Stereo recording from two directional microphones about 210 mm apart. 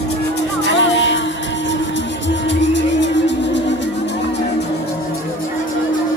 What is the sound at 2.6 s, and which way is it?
Music, 60° left (ahead or behind).